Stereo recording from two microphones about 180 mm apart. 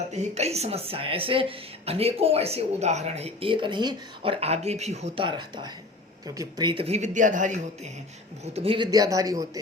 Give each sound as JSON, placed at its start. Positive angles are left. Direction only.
{"t": 0.1, "sound": "speech", "side_deg": -40}
{"t": 8.5, "sound": "speech", "side_deg": -30}